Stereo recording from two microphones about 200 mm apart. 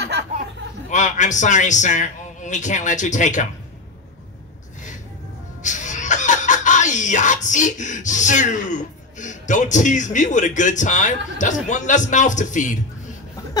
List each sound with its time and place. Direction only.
0.8 s a man's voice: 40° left (ahead or behind)
5.6 s speech: 40° left (ahead or behind)